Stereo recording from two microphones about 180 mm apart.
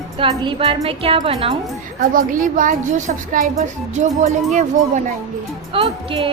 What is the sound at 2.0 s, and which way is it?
A woman's voice, 50° right (ahead or behind).